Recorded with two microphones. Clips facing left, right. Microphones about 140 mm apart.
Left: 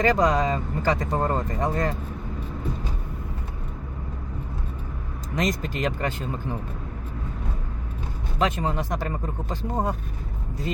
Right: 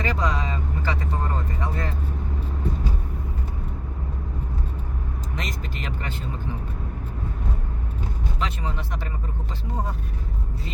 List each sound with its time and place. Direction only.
0.0 s speech: 40° left (ahead or behind)
5.3 s speech: 40° left (ahead or behind)
8.4 s speech: 45° left (ahead or behind)